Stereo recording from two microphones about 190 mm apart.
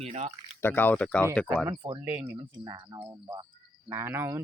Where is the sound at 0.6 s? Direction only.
10° left (ahead or behind).